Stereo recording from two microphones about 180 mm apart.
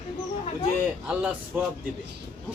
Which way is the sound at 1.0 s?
5° right (ahead or behind).